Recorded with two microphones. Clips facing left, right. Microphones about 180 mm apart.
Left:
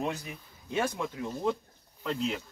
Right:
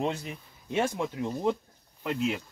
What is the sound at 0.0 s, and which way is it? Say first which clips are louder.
Speech: right 3 dB; 25° right (ahead or behind).